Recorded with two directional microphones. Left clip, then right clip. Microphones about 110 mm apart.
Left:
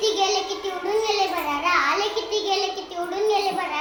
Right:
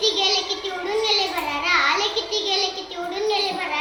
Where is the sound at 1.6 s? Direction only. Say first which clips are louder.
Right 2 dB; 35° left (ahead or behind).